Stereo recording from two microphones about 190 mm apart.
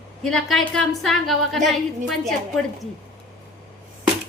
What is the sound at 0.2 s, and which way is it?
A woman's voice, centre (ahead or behind).